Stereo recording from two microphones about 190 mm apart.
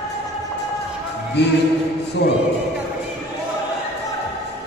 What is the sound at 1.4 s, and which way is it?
Speech, 60° left (ahead or behind).